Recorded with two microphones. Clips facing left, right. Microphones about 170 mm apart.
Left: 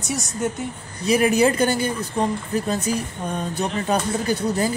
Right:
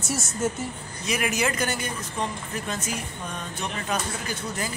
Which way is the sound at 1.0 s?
35° left (ahead or behind).